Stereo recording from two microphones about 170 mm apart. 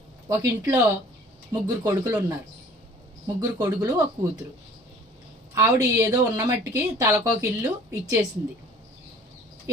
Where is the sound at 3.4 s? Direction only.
20° right (ahead or behind).